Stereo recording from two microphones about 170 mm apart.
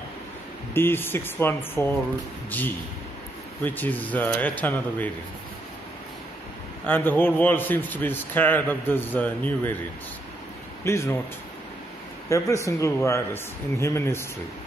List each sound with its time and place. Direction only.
0.7 s a man's voice: 15° left (ahead or behind)
6.9 s a man's voice: 10° left (ahead or behind)
10.8 s speech: 15° left (ahead or behind)
12.3 s a man's voice: 20° left (ahead or behind)